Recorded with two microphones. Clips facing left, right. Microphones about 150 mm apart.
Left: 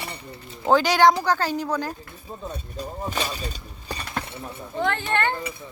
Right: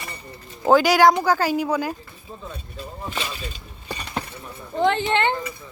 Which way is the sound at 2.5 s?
40° left (ahead or behind).